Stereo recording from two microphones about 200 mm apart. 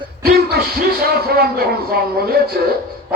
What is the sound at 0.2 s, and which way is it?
Music, 50° right (ahead or behind).